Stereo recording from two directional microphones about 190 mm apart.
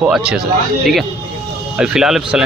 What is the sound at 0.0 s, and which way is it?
Speech, 5° right (ahead or behind).